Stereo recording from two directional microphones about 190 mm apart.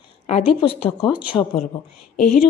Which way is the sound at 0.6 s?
30° left (ahead or behind).